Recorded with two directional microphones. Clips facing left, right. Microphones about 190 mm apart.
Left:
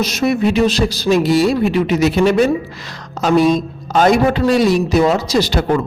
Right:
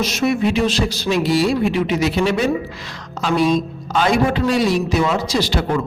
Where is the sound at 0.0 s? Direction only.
40° left (ahead or behind).